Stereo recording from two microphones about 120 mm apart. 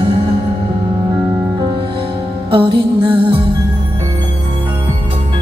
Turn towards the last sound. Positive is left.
turn(degrees=-45)  # may be behind; listen again after turning